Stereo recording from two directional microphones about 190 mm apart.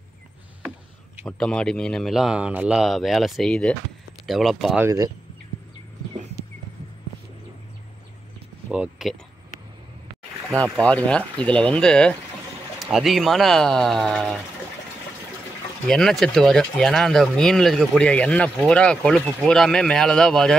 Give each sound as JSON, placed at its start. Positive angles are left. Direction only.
{"t": 1.2, "sound": "speech", "side_deg": 5}
{"t": 4.8, "sound": "speech", "side_deg": -20}
{"t": 8.6, "sound": "speech", "side_deg": -5}
{"t": 10.6, "sound": "speech", "side_deg": 5}
{"t": 15.9, "sound": "speech", "side_deg": 0}